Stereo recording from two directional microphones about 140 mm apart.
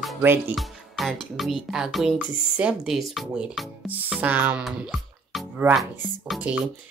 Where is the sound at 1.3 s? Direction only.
5° right (ahead or behind).